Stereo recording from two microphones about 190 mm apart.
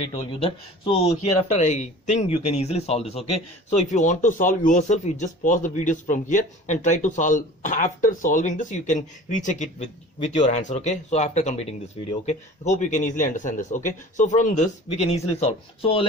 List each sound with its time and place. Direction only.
0.3 s speech: 30° left (ahead or behind)